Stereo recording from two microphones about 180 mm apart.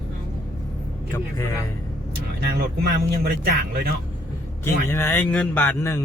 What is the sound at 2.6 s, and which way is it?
Speech, 55° right (ahead or behind).